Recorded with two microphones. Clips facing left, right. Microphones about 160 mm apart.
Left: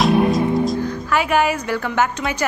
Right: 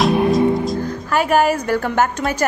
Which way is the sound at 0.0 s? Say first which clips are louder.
Right 1 dB; centre (ahead or behind).